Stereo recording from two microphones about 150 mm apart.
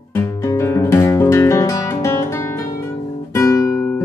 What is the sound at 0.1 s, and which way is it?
Music, 20° left (ahead or behind).